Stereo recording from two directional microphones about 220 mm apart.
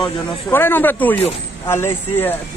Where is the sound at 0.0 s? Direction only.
10° left (ahead or behind).